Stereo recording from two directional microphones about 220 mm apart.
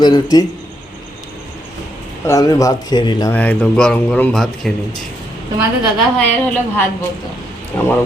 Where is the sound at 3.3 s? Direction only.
5° left (ahead or behind).